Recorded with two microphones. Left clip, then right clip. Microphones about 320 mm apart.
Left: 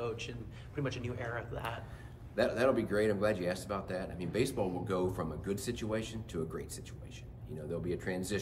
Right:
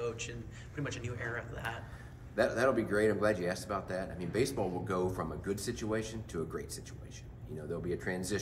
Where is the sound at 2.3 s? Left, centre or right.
Centre.